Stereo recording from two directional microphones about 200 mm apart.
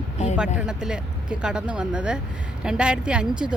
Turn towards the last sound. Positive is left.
turn(degrees=-5)  # may be behind; listen again after turning